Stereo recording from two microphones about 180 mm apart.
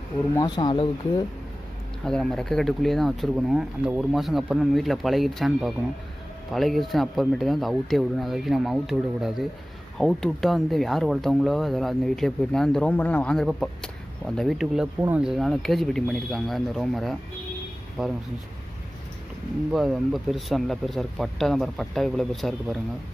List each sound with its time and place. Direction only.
0.3 s speech: 20° left (ahead or behind)
2.0 s speech: 5° left (ahead or behind)
19.7 s speech: centre (ahead or behind)